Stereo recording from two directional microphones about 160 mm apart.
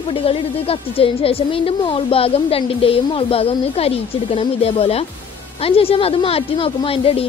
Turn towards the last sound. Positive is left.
turn(degrees=35)  # may be behind; listen again after turning